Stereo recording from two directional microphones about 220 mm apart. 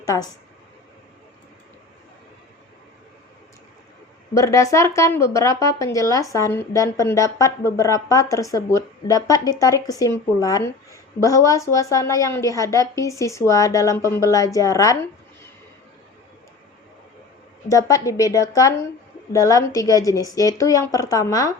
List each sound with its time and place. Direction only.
0.0 s speech: 15° left (ahead or behind)
4.4 s a woman's voice: 15° left (ahead or behind)
17.7 s a woman's voice: 15° left (ahead or behind)